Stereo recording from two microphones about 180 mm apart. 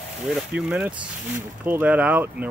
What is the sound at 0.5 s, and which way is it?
Speech, 5° right (ahead or behind).